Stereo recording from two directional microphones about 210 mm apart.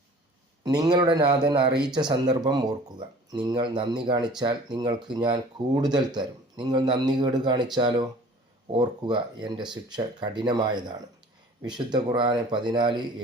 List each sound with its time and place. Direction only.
0.6 s a man's voice: 20° right (ahead or behind)